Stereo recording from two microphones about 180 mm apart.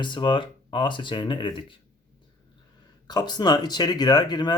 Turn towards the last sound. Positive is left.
turn(degrees=25)  # may be behind; listen again after turning